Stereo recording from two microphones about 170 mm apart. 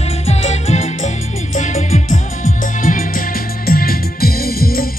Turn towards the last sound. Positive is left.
turn(degrees=60)  # may be behind; listen again after turning